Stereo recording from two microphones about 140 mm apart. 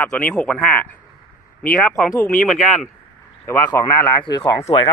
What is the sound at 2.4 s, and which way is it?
Speech, centre (ahead or behind).